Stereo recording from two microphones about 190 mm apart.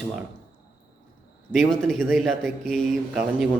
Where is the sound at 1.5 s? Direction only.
Centre (ahead or behind).